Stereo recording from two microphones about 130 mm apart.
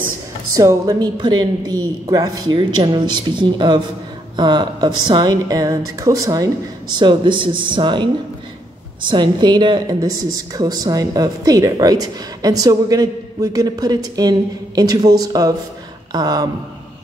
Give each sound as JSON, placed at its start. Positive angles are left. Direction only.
{"t": 0.5, "sound": "speech", "side_deg": -25}
{"t": 9.1, "sound": "speech", "side_deg": -35}